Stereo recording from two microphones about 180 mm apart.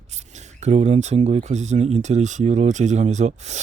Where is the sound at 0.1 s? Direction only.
40° right (ahead or behind).